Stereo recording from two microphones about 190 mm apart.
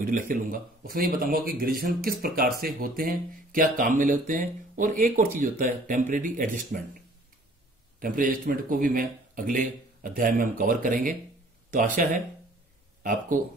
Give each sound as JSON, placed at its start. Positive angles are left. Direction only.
{"t": 0.3, "sound": "speech", "side_deg": -45}
{"t": 8.0, "sound": "speech", "side_deg": -45}